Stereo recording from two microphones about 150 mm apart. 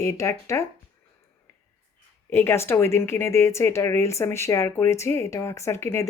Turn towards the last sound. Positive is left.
turn(degrees=15)  # may be behind; listen again after turning